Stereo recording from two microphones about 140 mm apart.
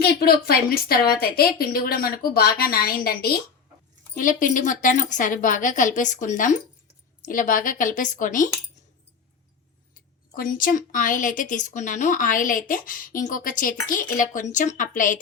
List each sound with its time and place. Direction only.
0.2 s speech: 90° left
4.1 s a woman's voice: 75° left (ahead or behind)
10.3 s a woman's voice: 85° left; by 15.2 s 70° left (ahead or behind)